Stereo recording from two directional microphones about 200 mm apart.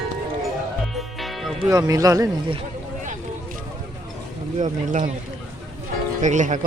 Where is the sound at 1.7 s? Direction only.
15° right (ahead or behind).